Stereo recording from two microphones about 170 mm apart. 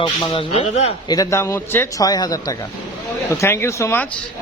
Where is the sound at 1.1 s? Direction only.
20° left (ahead or behind).